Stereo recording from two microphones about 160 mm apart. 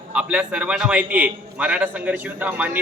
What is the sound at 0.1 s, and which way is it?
A man's voice, 10° right (ahead or behind).